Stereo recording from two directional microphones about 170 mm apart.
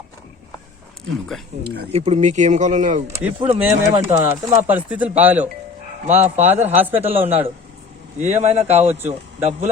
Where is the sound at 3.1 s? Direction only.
15° right (ahead or behind).